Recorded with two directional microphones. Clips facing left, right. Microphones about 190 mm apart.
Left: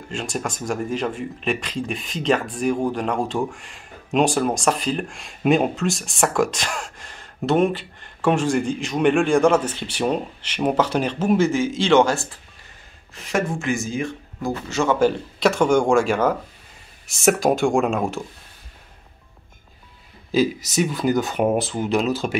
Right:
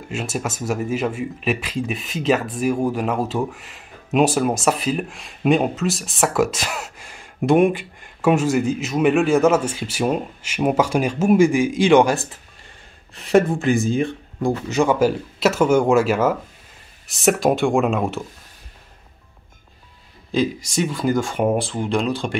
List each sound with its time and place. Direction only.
0.1 s speech: 5° right (ahead or behind)
13.3 s speech: 35° right (ahead or behind)
14.7 s speech: 15° right (ahead or behind)
20.2 s speech: 5° left (ahead or behind)